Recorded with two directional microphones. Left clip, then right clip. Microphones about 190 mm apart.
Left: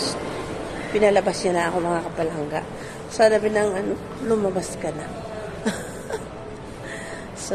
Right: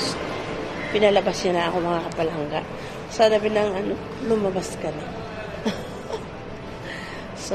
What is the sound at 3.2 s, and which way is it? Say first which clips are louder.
Speech: left 1 dB; 25° left (ahead or behind).